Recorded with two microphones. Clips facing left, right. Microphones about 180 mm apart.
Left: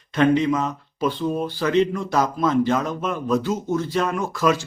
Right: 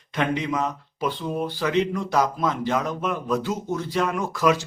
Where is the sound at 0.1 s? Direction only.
15° right (ahead or behind).